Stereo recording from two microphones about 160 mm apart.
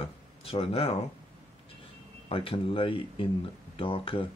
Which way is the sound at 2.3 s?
35° left (ahead or behind).